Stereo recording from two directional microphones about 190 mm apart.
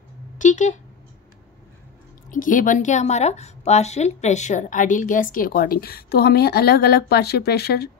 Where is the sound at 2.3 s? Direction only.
45° left (ahead or behind).